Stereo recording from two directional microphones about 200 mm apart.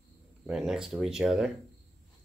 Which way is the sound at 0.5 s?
5° right (ahead or behind).